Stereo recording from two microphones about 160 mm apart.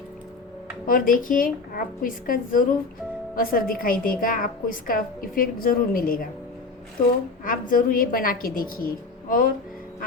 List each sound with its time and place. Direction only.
0.9 s a woman's voice: 60° left (ahead or behind)
7.4 s a woman's voice: 60° left (ahead or behind)